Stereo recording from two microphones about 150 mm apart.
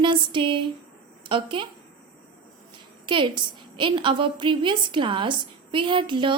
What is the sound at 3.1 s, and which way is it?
A woman's voice, 30° right (ahead or behind).